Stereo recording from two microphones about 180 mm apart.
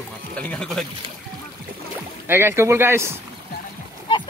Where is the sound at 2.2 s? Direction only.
15° right (ahead or behind).